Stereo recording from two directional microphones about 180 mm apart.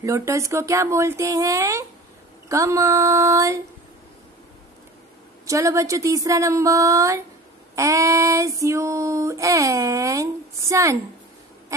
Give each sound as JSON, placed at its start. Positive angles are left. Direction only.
{"t": 0.0, "sound": "female singing", "side_deg": -15}
{"t": 5.5, "sound": "female singing", "side_deg": -15}